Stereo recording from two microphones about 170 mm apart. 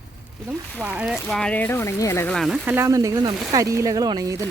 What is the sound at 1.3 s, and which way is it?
Speech, 5° left (ahead or behind).